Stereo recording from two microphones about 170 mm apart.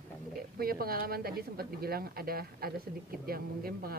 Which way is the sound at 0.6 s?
60° right (ahead or behind).